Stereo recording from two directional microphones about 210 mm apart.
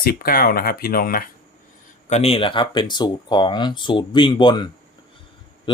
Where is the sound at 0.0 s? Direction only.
45° left (ahead or behind).